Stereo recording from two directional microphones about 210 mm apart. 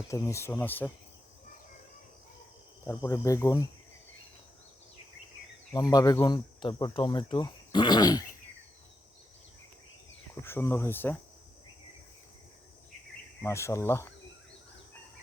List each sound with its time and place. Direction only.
0.1 s speech: 15° left (ahead or behind)
2.8 s speech: 15° left (ahead or behind)
5.7 s speech: 20° left (ahead or behind)
10.4 s speech: 10° left (ahead or behind)
13.4 s speech: 15° left (ahead or behind)